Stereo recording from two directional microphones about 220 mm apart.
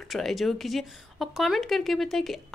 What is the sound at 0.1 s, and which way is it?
A woman's voice, centre (ahead or behind).